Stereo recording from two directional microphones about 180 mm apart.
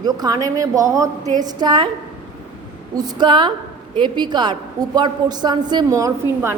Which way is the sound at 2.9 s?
20° right (ahead or behind).